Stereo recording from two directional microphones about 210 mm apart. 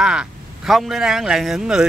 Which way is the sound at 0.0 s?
5° right (ahead or behind).